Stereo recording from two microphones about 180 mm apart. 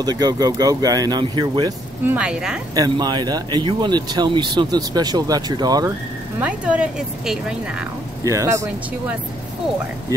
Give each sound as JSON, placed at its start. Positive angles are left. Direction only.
{"t": 0.0, "sound": "speech", "side_deg": -20}
{"t": 2.0, "sound": "a woman's voice", "side_deg": -5}
{"t": 2.7, "sound": "speech", "side_deg": -25}
{"t": 6.4, "sound": "a woman's voice", "side_deg": -5}
{"t": 8.2, "sound": "a woman's voice", "side_deg": -20}